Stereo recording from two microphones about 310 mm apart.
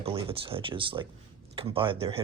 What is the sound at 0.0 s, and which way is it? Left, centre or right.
Speech, centre.